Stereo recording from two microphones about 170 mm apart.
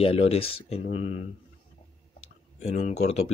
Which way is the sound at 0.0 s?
35° left (ahead or behind).